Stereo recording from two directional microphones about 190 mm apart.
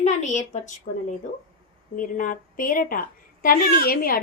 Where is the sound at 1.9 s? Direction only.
45° left (ahead or behind).